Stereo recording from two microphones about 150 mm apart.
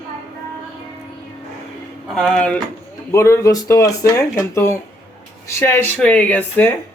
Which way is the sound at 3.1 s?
20° left (ahead or behind).